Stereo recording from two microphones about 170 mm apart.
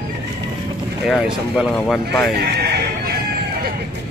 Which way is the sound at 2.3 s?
70° right (ahead or behind).